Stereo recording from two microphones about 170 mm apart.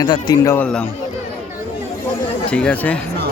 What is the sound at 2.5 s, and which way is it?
Speech, 5° left (ahead or behind).